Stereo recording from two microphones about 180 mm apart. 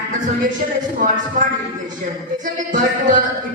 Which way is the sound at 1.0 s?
45° right (ahead or behind).